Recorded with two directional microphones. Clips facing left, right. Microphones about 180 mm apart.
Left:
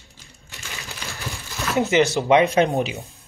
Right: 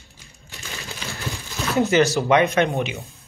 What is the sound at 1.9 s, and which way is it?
Speech, 20° left (ahead or behind).